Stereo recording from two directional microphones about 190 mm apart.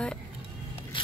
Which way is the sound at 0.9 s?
25° left (ahead or behind).